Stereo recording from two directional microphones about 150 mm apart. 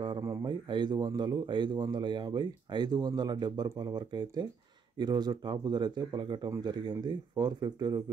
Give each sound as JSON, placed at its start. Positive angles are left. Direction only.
{"t": 0.2, "sound": "a man's voice", "side_deg": -25}